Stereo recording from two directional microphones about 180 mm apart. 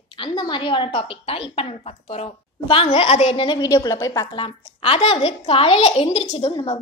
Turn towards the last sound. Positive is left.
turn(degrees=30)  # may be behind; listen again after turning